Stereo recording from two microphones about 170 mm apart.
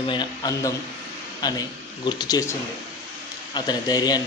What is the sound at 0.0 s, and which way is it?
Speech, 30° left (ahead or behind).